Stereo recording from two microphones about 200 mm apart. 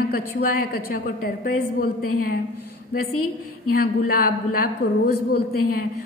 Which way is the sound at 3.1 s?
90° left.